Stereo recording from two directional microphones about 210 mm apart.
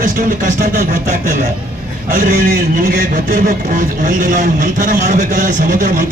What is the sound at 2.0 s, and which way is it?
A man's voice, 40° right (ahead or behind).